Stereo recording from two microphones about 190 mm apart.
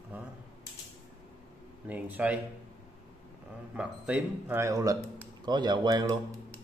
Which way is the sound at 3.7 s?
5° right (ahead or behind).